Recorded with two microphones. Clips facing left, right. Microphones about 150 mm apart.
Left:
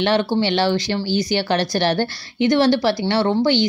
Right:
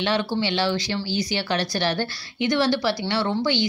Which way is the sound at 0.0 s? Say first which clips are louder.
Left 5 dB; 60° left (ahead or behind).